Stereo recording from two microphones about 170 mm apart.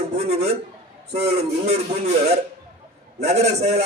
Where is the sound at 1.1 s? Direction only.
35° right (ahead or behind).